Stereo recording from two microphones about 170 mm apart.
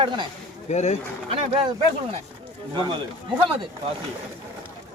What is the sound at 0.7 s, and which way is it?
Speech, 40° left (ahead or behind).